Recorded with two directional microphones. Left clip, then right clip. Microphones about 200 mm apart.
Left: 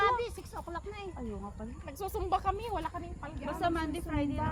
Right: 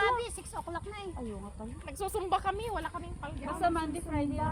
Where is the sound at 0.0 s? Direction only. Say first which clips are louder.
Even; 30° right (ahead or behind).